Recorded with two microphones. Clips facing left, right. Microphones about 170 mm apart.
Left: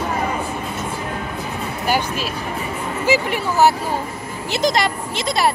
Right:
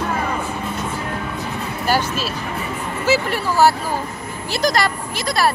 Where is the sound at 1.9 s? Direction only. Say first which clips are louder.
Right 1 dB; 15° left (ahead or behind).